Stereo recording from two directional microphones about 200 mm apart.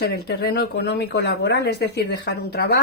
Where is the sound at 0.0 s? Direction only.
50° left (ahead or behind).